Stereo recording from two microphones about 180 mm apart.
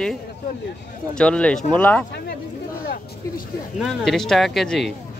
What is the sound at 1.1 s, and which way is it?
Speech, 5° left (ahead or behind).